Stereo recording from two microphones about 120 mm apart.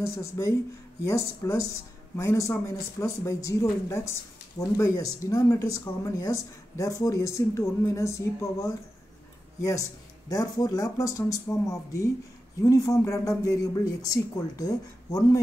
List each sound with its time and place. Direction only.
0.0 s speech: 25° left (ahead or behind)